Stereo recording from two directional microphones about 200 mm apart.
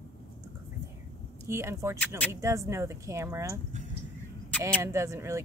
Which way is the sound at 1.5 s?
15° right (ahead or behind).